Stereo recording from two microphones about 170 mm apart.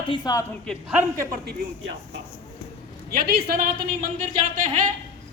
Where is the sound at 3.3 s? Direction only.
60° right (ahead or behind); by 4.8 s 45° right (ahead or behind).